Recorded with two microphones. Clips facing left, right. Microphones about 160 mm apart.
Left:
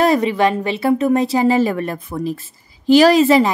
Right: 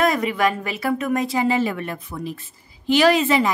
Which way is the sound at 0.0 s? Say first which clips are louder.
Left 5 dB; 30° left (ahead or behind).